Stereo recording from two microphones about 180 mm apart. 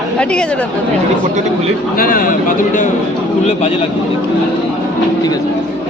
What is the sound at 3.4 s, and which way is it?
Speech, 35° left (ahead or behind).